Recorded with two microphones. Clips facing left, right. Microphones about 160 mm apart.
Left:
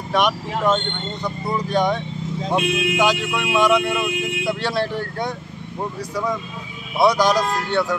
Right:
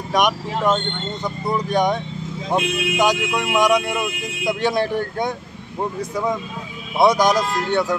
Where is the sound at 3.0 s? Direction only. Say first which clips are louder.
Right 4 dB; 15° right (ahead or behind).